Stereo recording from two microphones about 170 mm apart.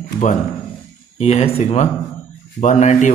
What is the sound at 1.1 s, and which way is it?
A man's voice, 35° left (ahead or behind).